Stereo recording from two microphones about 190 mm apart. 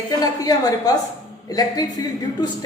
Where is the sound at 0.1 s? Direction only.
20° left (ahead or behind).